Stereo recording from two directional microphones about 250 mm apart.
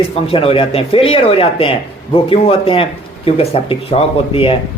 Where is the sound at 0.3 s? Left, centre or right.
Left.